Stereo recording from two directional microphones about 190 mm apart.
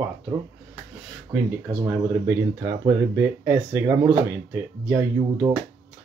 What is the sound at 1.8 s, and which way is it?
Speech, 15° right (ahead or behind).